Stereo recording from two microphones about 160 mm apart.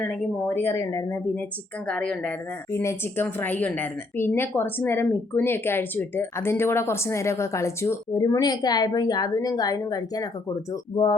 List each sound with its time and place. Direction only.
0.1 s a woman's voice: 10° left (ahead or behind)
1.9 s a woman's voice: 5° left (ahead or behind); by 11.2 s 30° left (ahead or behind)